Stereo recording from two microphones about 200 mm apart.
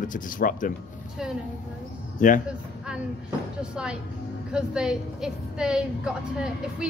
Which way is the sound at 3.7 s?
5° right (ahead or behind).